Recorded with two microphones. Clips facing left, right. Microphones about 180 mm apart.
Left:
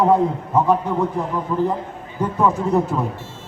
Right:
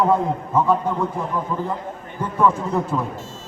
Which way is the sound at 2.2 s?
20° left (ahead or behind).